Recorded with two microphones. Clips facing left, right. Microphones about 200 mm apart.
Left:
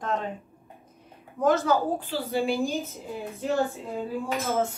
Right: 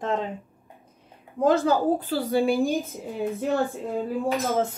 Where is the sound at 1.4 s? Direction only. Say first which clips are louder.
Right 2 dB; 30° right (ahead or behind).